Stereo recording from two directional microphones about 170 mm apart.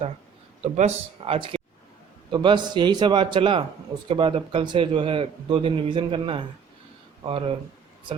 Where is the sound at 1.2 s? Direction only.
30° right (ahead or behind).